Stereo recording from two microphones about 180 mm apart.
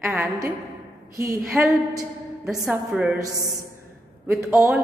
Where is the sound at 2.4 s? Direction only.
5° right (ahead or behind).